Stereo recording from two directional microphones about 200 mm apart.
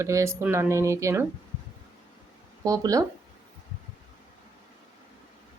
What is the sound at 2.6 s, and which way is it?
Speech, 15° right (ahead or behind).